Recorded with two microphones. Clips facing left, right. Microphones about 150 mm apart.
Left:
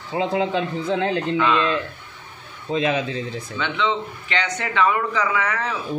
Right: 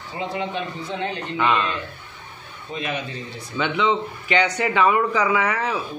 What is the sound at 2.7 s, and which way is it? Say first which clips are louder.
Speech: left 7 dB; 90° left.